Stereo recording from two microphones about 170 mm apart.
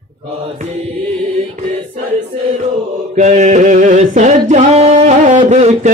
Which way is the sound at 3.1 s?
45° right (ahead or behind).